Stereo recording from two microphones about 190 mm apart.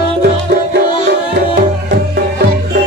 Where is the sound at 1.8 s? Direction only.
60° right (ahead or behind).